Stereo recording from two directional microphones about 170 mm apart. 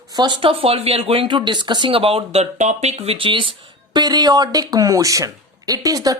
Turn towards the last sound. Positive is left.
turn(degrees=-20)  # may be behind; listen again after turning